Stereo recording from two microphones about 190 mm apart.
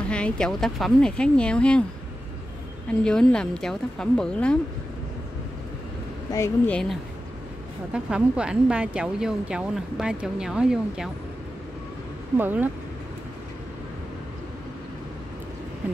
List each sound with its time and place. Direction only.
0.1 s speech: 5° left (ahead or behind)
2.9 s speech: 5° left (ahead or behind)
6.3 s speech: 15° left (ahead or behind)
7.9 s speech: 5° right (ahead or behind)
12.4 s speech: 10° right (ahead or behind)